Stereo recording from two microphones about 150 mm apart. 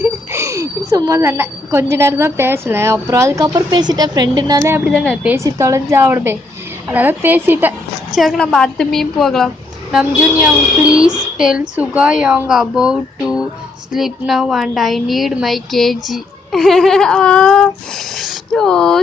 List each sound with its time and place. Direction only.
0.0 s a woman's voice: 20° right (ahead or behind)
4.8 s a woman's voice: centre (ahead or behind)
5.2 s a woman's voice: 15° right (ahead or behind)
8.2 s a woman's voice: centre (ahead or behind)
11.1 s a sound: 5° right (ahead or behind)
11.7 s a woman's voice: 5° right (ahead or behind)